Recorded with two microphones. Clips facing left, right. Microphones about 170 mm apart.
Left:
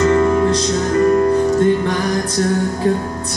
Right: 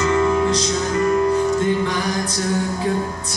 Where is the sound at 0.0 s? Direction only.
45° left (ahead or behind).